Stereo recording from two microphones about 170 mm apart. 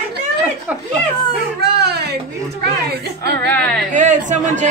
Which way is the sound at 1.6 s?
75° right (ahead or behind).